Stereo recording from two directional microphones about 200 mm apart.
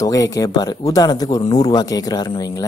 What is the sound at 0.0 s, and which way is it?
A man's voice, 15° left (ahead or behind).